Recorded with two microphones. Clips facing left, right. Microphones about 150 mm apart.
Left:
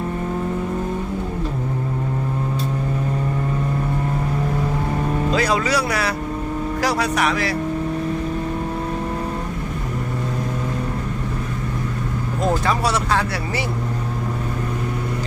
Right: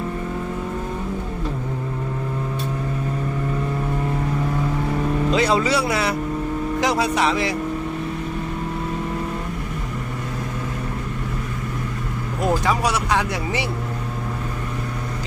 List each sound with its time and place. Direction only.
5.3 s speech: 25° right (ahead or behind)
12.4 s speech: 10° right (ahead or behind)